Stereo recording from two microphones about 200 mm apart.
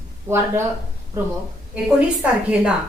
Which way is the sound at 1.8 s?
5° right (ahead or behind).